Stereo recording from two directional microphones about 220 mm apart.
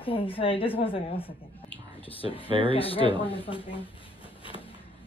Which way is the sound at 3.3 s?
25° left (ahead or behind).